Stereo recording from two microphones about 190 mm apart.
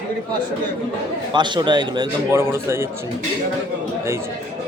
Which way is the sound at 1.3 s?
25° right (ahead or behind).